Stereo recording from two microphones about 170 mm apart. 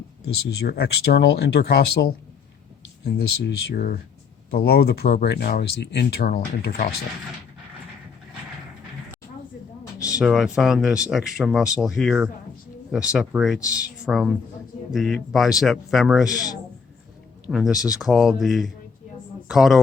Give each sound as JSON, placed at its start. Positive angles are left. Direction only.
{"t": 0.6, "sound": "speech", "side_deg": 70}
{"t": 10.2, "sound": "speech", "side_deg": 0}
{"t": 17.4, "sound": "a sound", "side_deg": 0}
{"t": 17.9, "sound": "speech", "side_deg": 0}